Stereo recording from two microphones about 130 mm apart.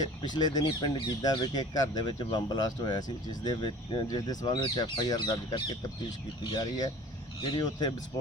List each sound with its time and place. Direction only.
0.0 s speech: 30° left (ahead or behind)